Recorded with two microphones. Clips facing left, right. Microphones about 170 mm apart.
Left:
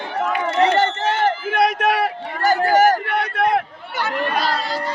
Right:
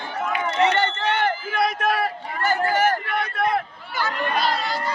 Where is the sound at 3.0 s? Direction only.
70° left (ahead or behind).